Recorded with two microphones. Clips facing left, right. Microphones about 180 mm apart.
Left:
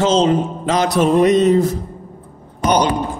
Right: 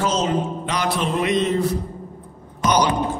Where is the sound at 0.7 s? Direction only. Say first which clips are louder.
Left 10 dB; 45° left (ahead or behind).